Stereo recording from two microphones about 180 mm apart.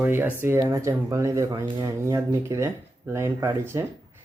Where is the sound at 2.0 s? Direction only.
15° right (ahead or behind).